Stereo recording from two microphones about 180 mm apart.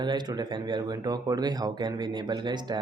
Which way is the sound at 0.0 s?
25° right (ahead or behind).